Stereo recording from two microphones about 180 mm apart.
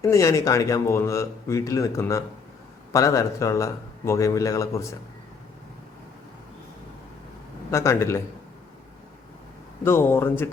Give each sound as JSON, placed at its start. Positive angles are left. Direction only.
{"t": 0.0, "sound": "speech", "side_deg": 15}
{"t": 7.7, "sound": "speech", "side_deg": 15}
{"t": 9.8, "sound": "speech", "side_deg": 15}